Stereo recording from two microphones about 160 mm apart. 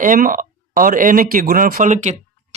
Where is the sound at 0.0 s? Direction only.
60° right (ahead or behind).